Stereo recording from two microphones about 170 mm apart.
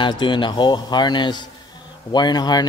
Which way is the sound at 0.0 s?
25° left (ahead or behind).